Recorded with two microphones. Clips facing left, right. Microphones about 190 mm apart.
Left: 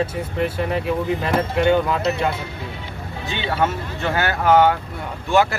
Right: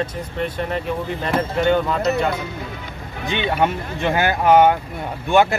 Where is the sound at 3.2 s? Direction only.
15° right (ahead or behind).